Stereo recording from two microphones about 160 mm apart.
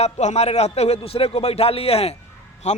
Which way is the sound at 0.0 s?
45° left (ahead or behind).